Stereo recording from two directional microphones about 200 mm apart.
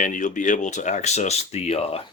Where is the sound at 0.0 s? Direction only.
40° left (ahead or behind).